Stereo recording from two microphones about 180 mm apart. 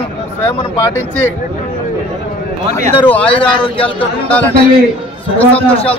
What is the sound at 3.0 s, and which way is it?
Speech, 10° left (ahead or behind).